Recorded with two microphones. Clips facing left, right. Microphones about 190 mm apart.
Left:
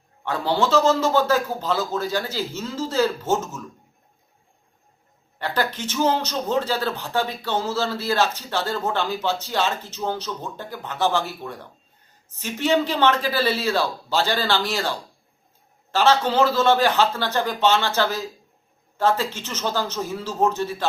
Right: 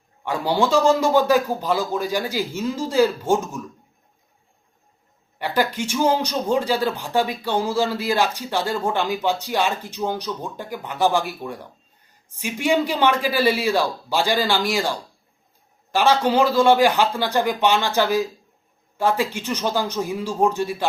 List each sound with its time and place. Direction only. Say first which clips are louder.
0.3 s speech: right 1 dB; 10° right (ahead or behind)
5.4 s speech: right 3 dB; 10° right (ahead or behind)